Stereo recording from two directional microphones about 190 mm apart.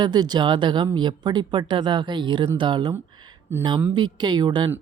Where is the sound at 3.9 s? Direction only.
20° right (ahead or behind).